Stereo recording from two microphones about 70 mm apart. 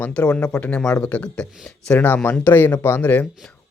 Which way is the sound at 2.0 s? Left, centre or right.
Left.